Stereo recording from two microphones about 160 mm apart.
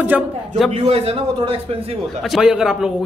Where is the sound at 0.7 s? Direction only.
35° right (ahead or behind).